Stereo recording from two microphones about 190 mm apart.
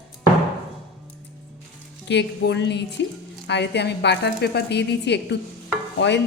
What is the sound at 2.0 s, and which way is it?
Music, 65° left (ahead or behind).